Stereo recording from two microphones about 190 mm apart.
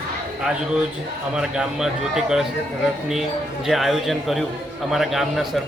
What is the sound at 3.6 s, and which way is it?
A man's voice, centre (ahead or behind).